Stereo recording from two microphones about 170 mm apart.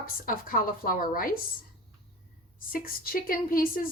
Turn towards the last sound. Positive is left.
turn(degrees=55)  # may be behind; listen again after turning